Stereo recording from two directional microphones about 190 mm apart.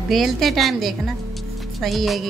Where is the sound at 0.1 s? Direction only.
Centre (ahead or behind).